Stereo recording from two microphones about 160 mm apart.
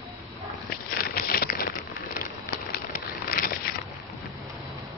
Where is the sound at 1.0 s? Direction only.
70° left (ahead or behind).